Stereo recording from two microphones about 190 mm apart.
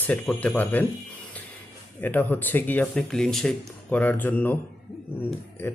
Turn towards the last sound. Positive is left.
turn(degrees=10)  # may be behind; listen again after turning